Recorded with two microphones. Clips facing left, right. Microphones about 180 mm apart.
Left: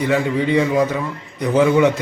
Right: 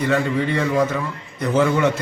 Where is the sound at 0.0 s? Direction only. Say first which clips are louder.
Left 2 dB; 15° left (ahead or behind).